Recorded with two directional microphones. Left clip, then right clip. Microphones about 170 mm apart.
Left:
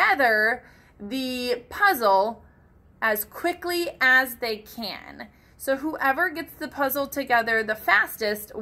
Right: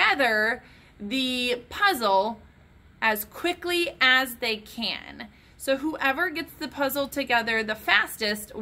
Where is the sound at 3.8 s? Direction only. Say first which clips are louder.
Left 2 dB; 5° right (ahead or behind).